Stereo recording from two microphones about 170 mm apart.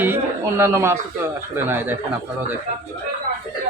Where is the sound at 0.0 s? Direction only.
15° right (ahead or behind).